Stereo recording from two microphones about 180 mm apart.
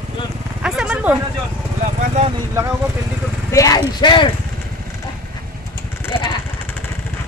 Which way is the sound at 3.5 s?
20° left (ahead or behind).